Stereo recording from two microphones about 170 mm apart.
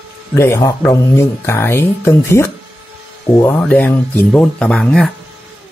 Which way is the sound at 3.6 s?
10° left (ahead or behind).